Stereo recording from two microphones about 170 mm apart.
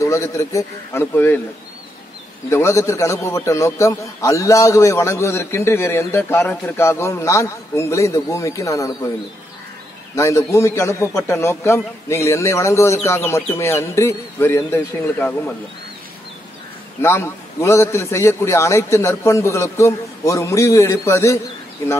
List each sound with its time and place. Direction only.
0.0 s a man's voice: 20° left (ahead or behind)
2.5 s a man's voice: 15° left (ahead or behind)
10.1 s a man's voice: 15° left (ahead or behind)
17.0 s a man's voice: 15° left (ahead or behind)